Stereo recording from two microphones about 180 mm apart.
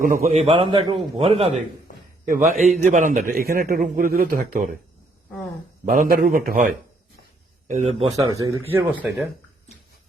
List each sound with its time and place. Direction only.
0.0 s a man's voice: 50° right (ahead or behind); by 1.6 s 30° right (ahead or behind)
2.7 s a man's voice: 45° right (ahead or behind)
5.8 s a man's voice: 50° right (ahead or behind)
7.7 s a man's voice: 35° right (ahead or behind)
8.1 s a man's voice: 15° right (ahead or behind)